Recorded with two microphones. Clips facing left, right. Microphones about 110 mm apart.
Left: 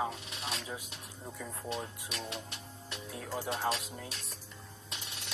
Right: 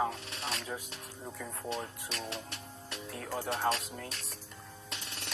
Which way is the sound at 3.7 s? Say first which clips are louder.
Right 3 dB; 5° left (ahead or behind).